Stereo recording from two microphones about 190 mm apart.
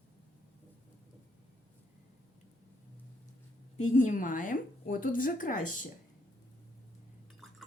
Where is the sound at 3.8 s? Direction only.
40° left (ahead or behind).